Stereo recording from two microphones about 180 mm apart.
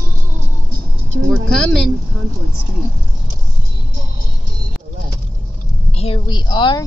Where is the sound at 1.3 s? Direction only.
5° left (ahead or behind).